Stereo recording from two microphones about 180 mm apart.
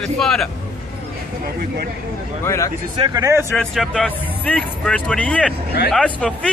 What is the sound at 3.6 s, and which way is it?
Speech, 5° left (ahead or behind).